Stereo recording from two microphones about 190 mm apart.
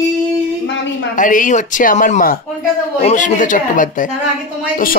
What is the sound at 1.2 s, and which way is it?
Speech, 45° left (ahead or behind).